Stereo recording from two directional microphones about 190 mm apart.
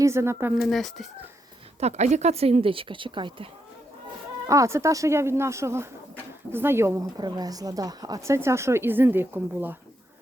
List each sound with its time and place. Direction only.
0.0 s speech: 15° right (ahead or behind)
0.5 s speech: centre (ahead or behind)
1.8 s speech: 35° right (ahead or behind)
4.4 s speech: 15° right (ahead or behind)